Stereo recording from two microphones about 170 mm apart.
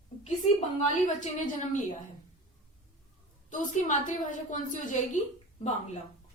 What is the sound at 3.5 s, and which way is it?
A woman's voice, 50° left (ahead or behind).